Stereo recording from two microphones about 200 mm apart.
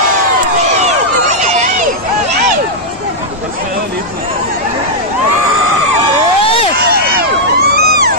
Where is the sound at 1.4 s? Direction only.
35° right (ahead or behind).